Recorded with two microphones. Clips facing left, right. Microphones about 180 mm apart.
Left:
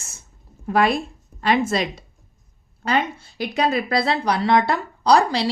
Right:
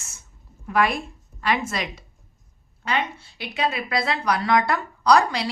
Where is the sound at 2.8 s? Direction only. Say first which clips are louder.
Left 4 dB; 40° left (ahead or behind).